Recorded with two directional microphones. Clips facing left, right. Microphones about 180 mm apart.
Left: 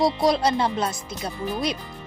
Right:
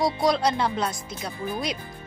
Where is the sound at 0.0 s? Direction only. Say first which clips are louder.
Left 2 dB; 25° left (ahead or behind).